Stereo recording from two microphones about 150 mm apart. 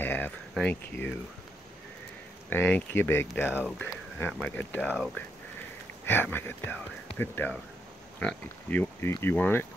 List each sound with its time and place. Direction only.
0.0 s speech: 10° left (ahead or behind)
2.5 s speech: 15° left (ahead or behind)
6.0 s speech: 15° left (ahead or behind)